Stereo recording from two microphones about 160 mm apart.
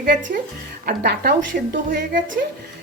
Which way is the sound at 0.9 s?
85° right.